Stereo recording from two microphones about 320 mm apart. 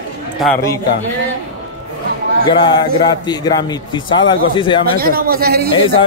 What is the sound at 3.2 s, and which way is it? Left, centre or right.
Speech, centre.